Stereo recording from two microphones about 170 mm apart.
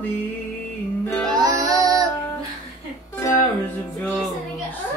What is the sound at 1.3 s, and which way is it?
Music, 20° right (ahead or behind).